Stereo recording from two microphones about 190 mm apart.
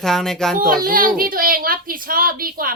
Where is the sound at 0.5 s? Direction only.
50° right (ahead or behind).